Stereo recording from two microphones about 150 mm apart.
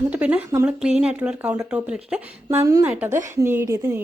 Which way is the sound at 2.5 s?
20° right (ahead or behind).